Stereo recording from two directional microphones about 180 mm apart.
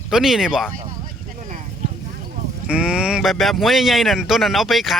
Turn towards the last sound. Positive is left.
turn(degrees=0)  # may be behind; listen again after turning